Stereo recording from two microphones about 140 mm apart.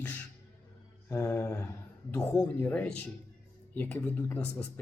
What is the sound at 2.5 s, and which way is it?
Speech, 10° left (ahead or behind).